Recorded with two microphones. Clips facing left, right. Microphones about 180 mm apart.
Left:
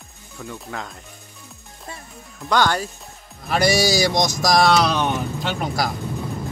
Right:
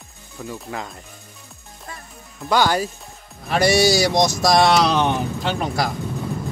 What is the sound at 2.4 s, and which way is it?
Speech, 10° right (ahead or behind).